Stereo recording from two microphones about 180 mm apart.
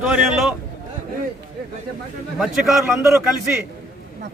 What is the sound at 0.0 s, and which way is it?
Speech, 5° right (ahead or behind).